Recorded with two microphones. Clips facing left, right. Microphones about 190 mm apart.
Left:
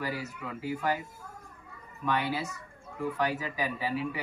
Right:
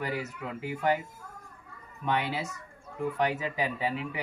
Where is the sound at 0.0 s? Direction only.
20° right (ahead or behind).